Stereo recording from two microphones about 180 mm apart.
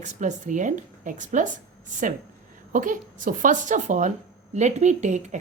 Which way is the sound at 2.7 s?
45° right (ahead or behind).